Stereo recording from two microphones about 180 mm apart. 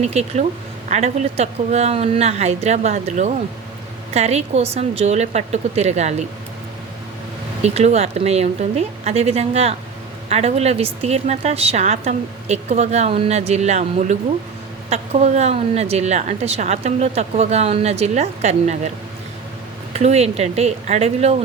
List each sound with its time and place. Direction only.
0.0 s a woman's voice: 35° right (ahead or behind)
7.6 s a woman's voice: 35° right (ahead or behind)
19.9 s a woman's voice: 40° right (ahead or behind)